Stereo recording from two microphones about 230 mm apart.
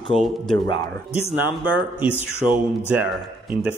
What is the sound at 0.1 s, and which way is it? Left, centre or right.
Speech, centre.